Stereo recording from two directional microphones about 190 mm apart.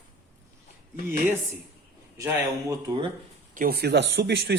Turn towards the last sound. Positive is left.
turn(degrees=-65)  # may be behind; listen again after turning